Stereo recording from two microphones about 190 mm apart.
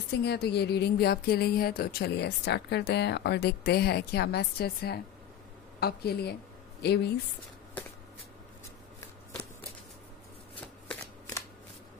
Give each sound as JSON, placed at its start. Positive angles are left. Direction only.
{"t": 0.2, "sound": "speech", "side_deg": 60}
{"t": 10.9, "sound": "shuffling cards", "side_deg": 15}